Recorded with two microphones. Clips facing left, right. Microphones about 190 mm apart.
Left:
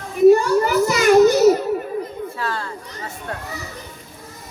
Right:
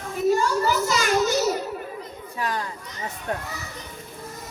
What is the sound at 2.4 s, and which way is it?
Speech, 15° right (ahead or behind).